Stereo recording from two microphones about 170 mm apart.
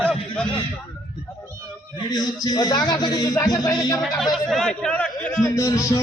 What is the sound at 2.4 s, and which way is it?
Speech, 25° left (ahead or behind).